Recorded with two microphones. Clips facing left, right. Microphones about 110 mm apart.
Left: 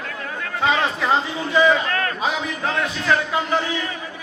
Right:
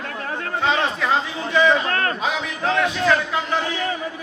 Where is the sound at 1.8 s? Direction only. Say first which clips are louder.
Right 1 dB; 35° right (ahead or behind).